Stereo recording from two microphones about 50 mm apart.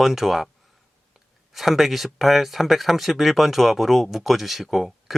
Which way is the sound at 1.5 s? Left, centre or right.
Centre.